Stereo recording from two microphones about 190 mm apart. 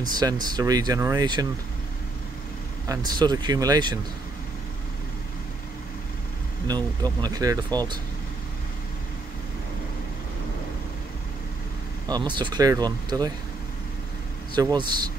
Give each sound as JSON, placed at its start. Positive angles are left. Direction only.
{"t": 0.2, "sound": "speech", "side_deg": -20}
{"t": 2.9, "sound": "speech", "side_deg": -20}
{"t": 6.7, "sound": "speech", "side_deg": -20}
{"t": 12.1, "sound": "speech", "side_deg": -25}
{"t": 14.5, "sound": "speech", "side_deg": -20}